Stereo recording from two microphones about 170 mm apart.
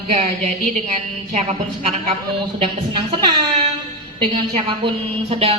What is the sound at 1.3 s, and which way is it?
Speech, 40° right (ahead or behind).